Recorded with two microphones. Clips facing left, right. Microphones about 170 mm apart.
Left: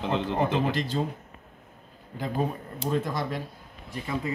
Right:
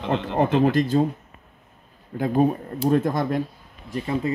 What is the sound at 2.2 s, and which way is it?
Speech, 55° right (ahead or behind).